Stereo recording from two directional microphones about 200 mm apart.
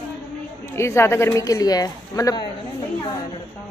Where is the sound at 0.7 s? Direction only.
15° left (ahead or behind).